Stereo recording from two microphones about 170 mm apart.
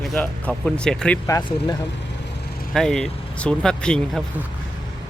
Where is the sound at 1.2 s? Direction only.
20° left (ahead or behind).